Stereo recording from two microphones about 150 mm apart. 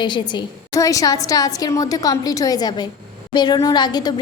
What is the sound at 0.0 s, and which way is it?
A woman's voice, 30° left (ahead or behind).